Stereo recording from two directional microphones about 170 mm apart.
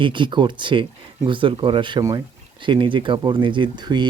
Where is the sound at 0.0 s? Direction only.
30° right (ahead or behind).